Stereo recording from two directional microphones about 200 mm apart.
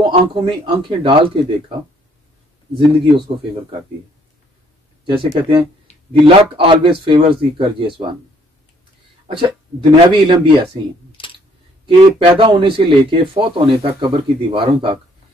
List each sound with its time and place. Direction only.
0.1 s speech: 25° right (ahead or behind)
5.0 s speech: 25° right (ahead or behind)
9.3 s speech: 25° right (ahead or behind)
11.1 s a sound: 25° left (ahead or behind)
12.4 s speech: 25° right (ahead or behind)